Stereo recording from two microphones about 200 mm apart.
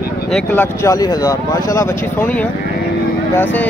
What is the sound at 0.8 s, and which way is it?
Speech, 15° left (ahead or behind).